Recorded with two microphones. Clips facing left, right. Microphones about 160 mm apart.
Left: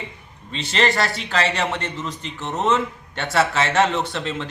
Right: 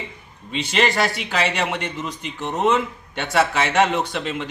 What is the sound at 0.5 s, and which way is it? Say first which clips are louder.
A man's voice: right 1 dB; 10° right (ahead or behind).